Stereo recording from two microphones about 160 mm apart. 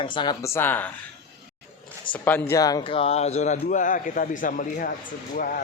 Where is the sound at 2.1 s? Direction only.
10° left (ahead or behind).